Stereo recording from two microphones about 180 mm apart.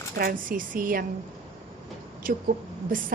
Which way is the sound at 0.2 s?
50° right (ahead or behind).